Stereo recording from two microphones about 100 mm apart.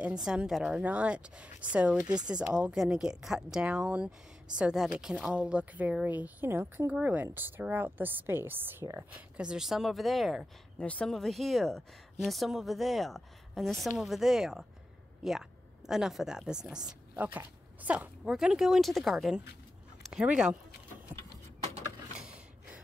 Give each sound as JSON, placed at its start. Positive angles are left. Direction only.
{"t": 0.0, "sound": "a woman's voice", "side_deg": -10}
{"t": 9.4, "sound": "speech", "side_deg": -5}
{"t": 18.3, "sound": "speech", "side_deg": -5}
{"t": 22.2, "sound": "gasp", "side_deg": -10}